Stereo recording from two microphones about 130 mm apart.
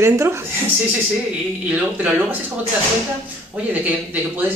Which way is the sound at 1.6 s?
10° right (ahead or behind).